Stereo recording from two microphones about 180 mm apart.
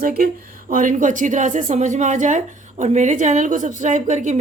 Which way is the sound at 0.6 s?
45° right (ahead or behind).